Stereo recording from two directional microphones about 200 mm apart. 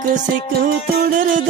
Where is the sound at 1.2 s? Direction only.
40° right (ahead or behind).